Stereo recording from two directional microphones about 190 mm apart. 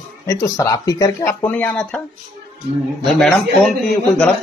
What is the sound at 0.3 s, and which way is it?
Speech, 15° left (ahead or behind).